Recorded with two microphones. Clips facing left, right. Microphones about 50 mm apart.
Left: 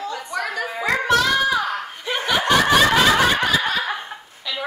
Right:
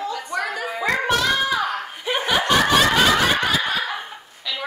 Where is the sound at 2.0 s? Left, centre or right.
Centre.